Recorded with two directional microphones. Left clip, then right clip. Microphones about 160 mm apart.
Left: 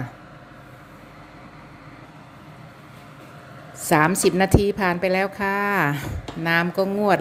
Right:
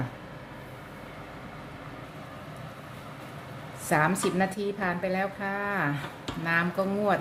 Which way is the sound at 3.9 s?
40° left (ahead or behind).